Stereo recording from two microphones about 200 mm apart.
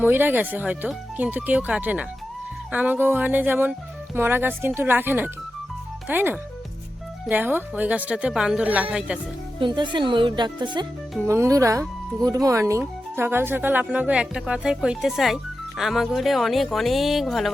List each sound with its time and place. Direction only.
0.0 s speech: 10° right (ahead or behind)
9.6 s speech: 25° right (ahead or behind); by 17.5 s centre (ahead or behind)